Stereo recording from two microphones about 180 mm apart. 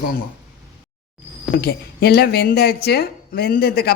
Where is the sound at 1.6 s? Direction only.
60° left (ahead or behind).